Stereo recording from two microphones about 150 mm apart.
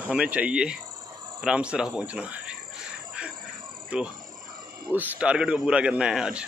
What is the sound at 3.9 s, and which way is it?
Speech, 5° right (ahead or behind).